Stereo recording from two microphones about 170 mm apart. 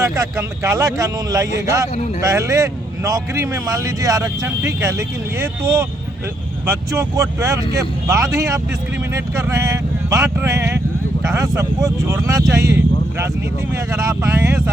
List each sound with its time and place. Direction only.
0.0 s speech: 15° right (ahead or behind)